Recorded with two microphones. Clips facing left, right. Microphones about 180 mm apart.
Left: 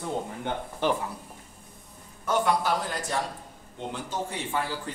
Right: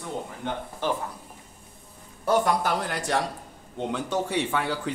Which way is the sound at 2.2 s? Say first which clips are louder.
Right 2 dB; 45° right (ahead or behind).